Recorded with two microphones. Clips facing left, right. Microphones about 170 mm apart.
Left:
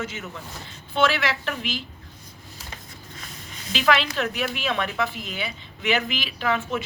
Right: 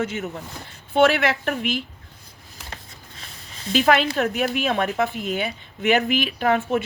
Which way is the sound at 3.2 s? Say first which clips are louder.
Left 2 dB; 30° right (ahead or behind).